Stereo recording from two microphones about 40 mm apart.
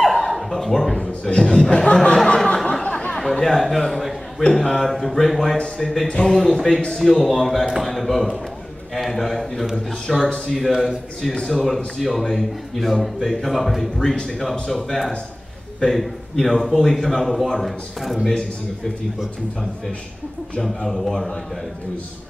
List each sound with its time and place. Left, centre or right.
0.0 s a sound: centre
1.3 s speech: centre
2.3 s a sound: centre
3.2 s a man's voice: centre
4.4 s a man's voice: centre
11.6 s a man's voice: centre
20.6 s a man's voice: centre